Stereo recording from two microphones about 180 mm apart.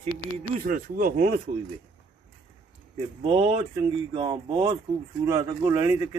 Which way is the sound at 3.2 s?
30° right (ahead or behind).